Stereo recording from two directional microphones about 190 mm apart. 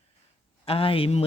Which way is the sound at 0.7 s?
30° left (ahead or behind).